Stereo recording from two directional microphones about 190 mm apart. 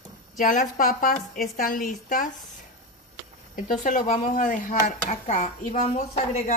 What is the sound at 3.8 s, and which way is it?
A woman's voice, 40° left (ahead or behind).